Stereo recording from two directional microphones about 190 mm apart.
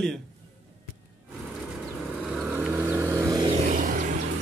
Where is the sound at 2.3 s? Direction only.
5° right (ahead or behind).